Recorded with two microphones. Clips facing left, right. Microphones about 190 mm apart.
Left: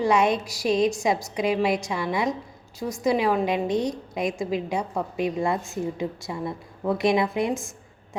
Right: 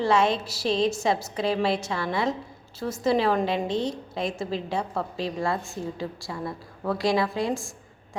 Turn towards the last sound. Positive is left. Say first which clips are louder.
# left 2 dB
turn(degrees=20)  # may be behind; listen again after turning